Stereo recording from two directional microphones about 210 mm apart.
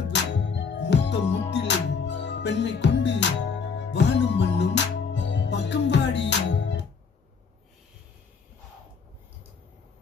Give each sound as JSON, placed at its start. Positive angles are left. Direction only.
{"t": 0.1, "sound": "music", "side_deg": 55}